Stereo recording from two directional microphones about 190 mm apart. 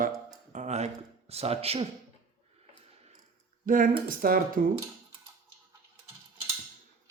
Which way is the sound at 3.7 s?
45° right (ahead or behind).